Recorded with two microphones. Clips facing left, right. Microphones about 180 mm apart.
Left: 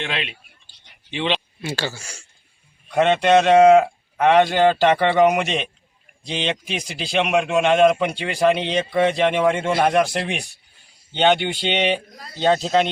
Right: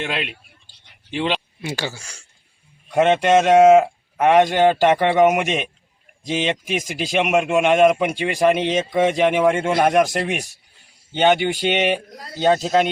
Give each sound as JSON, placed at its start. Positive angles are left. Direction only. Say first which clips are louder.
{"t": 0.0, "sound": "speech", "louder": "right 2 dB", "side_deg": -5}
{"t": 1.6, "sound": "speech", "louder": "left 1 dB", "side_deg": -15}
{"t": 2.0, "sound": "speech", "louder": "left 3 dB", "side_deg": 10}
{"t": 3.0, "sound": "speech", "louder": "even", "side_deg": -10}